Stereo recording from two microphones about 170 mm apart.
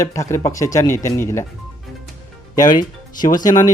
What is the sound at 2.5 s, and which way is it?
Speech, 25° left (ahead or behind).